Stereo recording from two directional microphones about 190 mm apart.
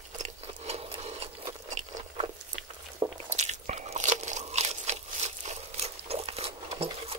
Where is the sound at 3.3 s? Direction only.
40° right (ahead or behind).